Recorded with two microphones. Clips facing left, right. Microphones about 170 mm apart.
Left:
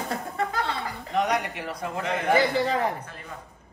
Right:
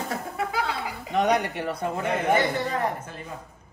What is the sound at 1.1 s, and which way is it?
Speech, 30° right (ahead or behind).